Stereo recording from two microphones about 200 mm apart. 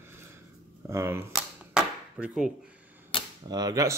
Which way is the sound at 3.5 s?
15° right (ahead or behind).